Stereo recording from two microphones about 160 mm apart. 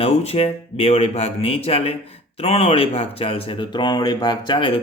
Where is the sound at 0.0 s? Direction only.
40° left (ahead or behind).